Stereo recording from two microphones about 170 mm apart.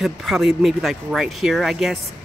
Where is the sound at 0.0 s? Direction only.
Centre (ahead or behind).